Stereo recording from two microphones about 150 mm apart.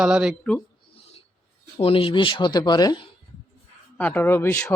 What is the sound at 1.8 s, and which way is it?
Speech, 35° left (ahead or behind).